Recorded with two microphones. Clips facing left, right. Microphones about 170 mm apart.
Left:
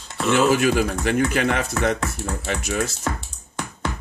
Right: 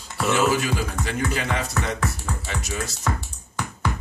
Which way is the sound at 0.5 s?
55° left (ahead or behind).